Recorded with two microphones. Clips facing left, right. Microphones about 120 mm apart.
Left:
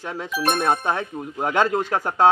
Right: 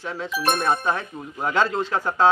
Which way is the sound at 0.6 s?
60° left (ahead or behind).